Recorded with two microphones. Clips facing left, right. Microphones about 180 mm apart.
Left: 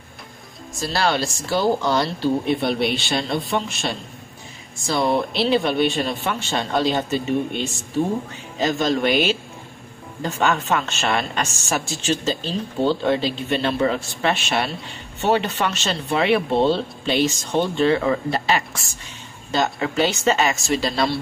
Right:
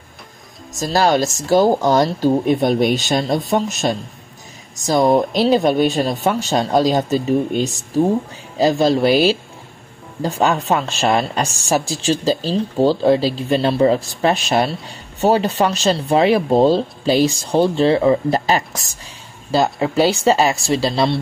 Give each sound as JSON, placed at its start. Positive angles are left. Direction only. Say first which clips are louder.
{"t": 0.7, "sound": "a woman's voice", "louder": "right 6 dB", "side_deg": -40}